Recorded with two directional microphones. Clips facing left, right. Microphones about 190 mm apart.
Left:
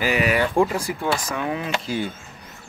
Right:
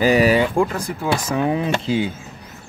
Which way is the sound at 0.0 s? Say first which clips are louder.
Right 6 dB; 35° right (ahead or behind).